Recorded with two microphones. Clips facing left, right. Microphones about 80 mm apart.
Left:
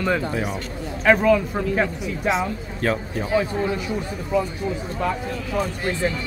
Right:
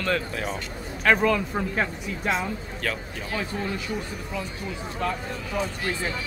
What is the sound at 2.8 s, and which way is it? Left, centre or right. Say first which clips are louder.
Speech: left 10 dB; left.